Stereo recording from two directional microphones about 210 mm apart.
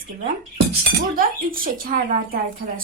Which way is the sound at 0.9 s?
40° right (ahead or behind).